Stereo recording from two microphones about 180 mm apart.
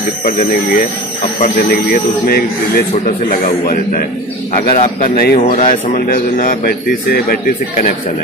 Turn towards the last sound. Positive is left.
turn(degrees=55)  # may be behind; listen again after turning